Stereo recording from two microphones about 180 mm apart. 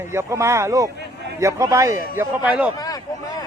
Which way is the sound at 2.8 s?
20° left (ahead or behind).